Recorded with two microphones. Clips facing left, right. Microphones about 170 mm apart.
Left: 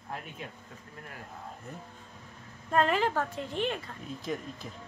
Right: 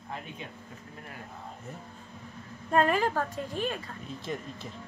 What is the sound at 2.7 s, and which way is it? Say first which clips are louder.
Speech: right 1 dB; 10° right (ahead or behind).